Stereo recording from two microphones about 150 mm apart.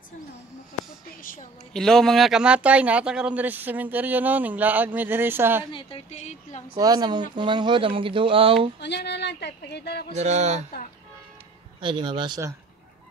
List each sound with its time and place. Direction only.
1.7 s speech: 5° left (ahead or behind); by 5.7 s 15° right (ahead or behind)
5.7 s a woman's voice: 35° left (ahead or behind)
6.8 s speech: 25° right (ahead or behind)
9.7 s speech: 90° left
10.1 s speech: 50° right (ahead or behind)
11.8 s speech: 30° right (ahead or behind)